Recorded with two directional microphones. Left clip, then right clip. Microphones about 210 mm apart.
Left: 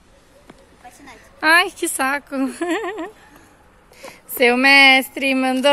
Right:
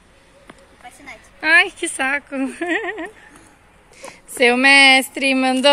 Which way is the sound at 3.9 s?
Centre (ahead or behind).